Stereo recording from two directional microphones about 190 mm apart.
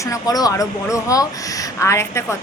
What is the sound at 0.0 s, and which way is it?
Speech, 15° left (ahead or behind).